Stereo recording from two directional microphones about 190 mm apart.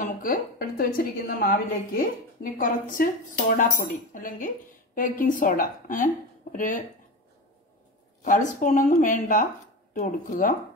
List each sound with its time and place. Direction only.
0.0 s a woman's voice: 50° left (ahead or behind)
8.2 s a woman's voice: 40° left (ahead or behind)